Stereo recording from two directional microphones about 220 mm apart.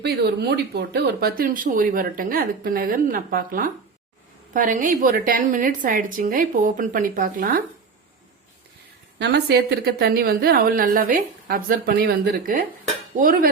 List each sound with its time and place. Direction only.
0.0 s speech: 50° right (ahead or behind)
9.1 s a woman's voice: 50° right (ahead or behind)